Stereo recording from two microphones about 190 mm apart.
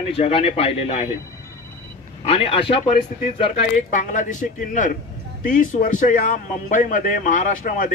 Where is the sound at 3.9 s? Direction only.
40° left (ahead or behind).